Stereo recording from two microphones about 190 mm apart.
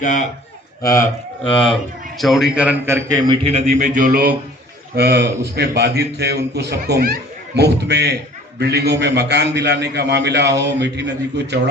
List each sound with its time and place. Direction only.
0.0 s a man's voice: 45° left (ahead or behind)
1.5 s a man's voice: 5° left (ahead or behind); by 3.3 s 20° right (ahead or behind)
3.4 s a man's voice: 35° right (ahead or behind); by 11.7 s 65° right (ahead or behind)